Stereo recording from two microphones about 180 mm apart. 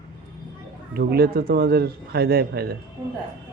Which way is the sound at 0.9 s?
60° right (ahead or behind).